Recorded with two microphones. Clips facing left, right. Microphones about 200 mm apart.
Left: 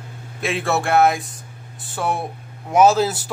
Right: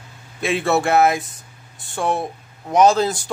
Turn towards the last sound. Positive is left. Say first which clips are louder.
# even
turn(degrees=5)  # may be behind; listen again after turning